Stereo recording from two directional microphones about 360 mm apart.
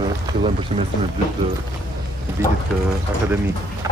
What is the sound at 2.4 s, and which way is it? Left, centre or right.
Speech, centre.